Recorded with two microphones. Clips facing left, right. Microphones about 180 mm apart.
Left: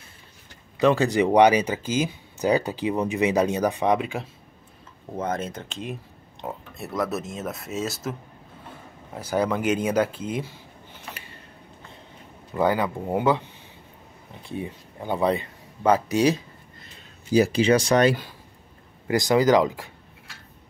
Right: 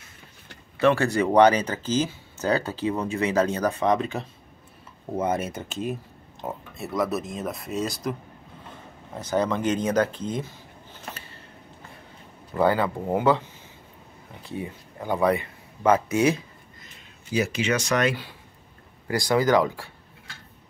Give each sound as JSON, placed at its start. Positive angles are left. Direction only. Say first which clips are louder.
{"t": 0.7, "sound": "speech", "louder": "left 1 dB", "side_deg": 15}
{"t": 5.1, "sound": "speech", "louder": "right 2 dB", "side_deg": -10}
{"t": 12.5, "sound": "speech", "louder": "right 1 dB", "side_deg": 15}
{"t": 14.5, "sound": "speech", "louder": "left 1 dB", "side_deg": 20}
{"t": 17.3, "sound": "speech", "louder": "left 6 dB", "side_deg": 35}
{"t": 19.0, "sound": "speech", "louder": "left 3 dB", "side_deg": 20}